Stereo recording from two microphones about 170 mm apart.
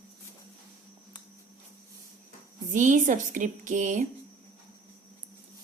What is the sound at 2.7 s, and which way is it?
A woman's voice, 50° right (ahead or behind).